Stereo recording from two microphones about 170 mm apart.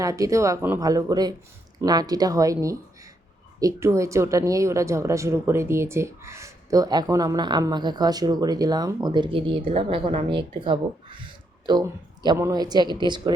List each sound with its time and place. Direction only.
0.0 s speech: 20° right (ahead or behind)